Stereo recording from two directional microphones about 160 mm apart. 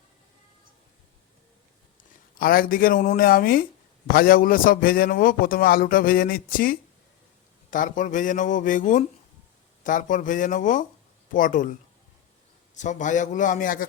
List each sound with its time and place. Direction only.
2.4 s a man's voice: 65° left (ahead or behind)
12.7 s a man's voice: 50° left (ahead or behind)